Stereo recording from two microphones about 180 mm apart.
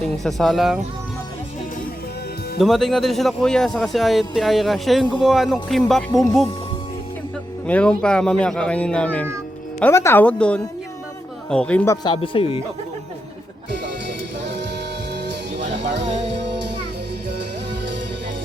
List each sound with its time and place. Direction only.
0.0 s speech: centre (ahead or behind)
2.6 s speech: centre (ahead or behind)
7.7 s speech: 5° left (ahead or behind)
12.0 s speech: 30° left (ahead or behind)
15.1 s music: 70° right (ahead or behind)